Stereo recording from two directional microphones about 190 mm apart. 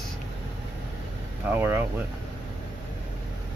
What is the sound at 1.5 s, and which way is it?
Speech, 10° right (ahead or behind).